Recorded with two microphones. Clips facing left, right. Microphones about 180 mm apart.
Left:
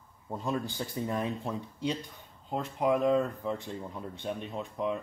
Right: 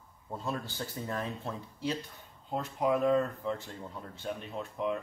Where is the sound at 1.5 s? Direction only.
5° right (ahead or behind).